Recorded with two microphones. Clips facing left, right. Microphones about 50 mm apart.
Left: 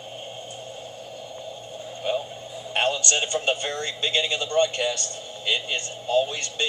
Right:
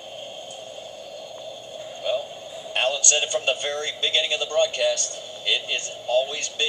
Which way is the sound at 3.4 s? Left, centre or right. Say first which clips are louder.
Right 1 dB; centre.